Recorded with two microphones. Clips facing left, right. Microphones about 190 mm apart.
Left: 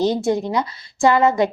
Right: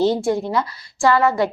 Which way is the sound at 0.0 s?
20° left (ahead or behind).